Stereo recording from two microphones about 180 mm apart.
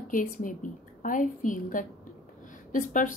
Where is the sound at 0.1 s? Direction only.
50° left (ahead or behind).